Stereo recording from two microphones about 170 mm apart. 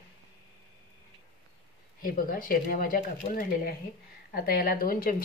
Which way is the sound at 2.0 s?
55° left (ahead or behind).